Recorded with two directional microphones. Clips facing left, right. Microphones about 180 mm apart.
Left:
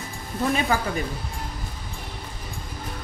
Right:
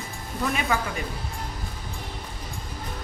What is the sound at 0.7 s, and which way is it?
Speech, 35° left (ahead or behind).